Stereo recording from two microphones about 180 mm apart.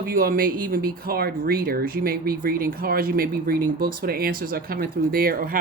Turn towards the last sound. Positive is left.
turn(degrees=-55)  # may be behind; listen again after turning